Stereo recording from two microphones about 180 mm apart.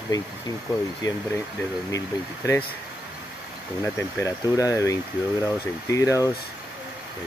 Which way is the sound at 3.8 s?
20° left (ahead or behind).